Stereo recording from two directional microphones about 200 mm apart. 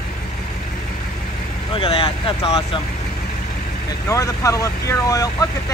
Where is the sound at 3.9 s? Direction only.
15° left (ahead or behind).